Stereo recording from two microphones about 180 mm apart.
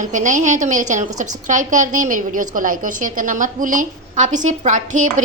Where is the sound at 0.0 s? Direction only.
45° right (ahead or behind).